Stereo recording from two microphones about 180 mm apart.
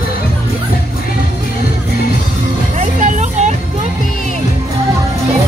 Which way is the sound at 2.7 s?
40° right (ahead or behind).